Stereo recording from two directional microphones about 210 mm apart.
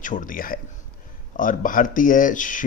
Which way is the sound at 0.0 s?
40° left (ahead or behind).